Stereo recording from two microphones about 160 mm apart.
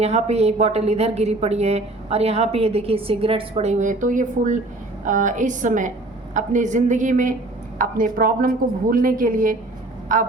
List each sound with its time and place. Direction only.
0.0 s a woman's voice: 40° right (ahead or behind)